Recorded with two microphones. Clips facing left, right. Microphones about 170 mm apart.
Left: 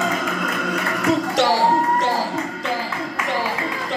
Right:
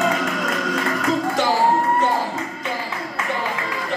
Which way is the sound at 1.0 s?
75° left (ahead or behind).